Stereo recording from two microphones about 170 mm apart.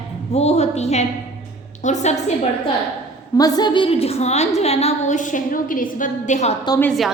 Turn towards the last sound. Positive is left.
turn(degrees=0)  # may be behind; listen again after turning